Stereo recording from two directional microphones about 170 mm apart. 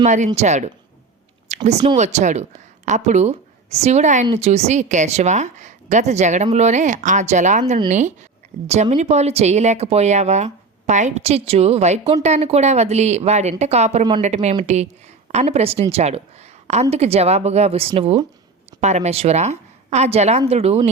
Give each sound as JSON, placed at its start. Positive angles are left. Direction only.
{"t": 0.0, "sound": "a woman's voice", "side_deg": -45}
{"t": 1.5, "sound": "a sound", "side_deg": -45}
{"t": 2.0, "sound": "a woman's voice", "side_deg": -45}